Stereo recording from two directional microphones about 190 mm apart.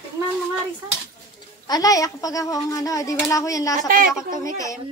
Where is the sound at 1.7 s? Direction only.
20° left (ahead or behind).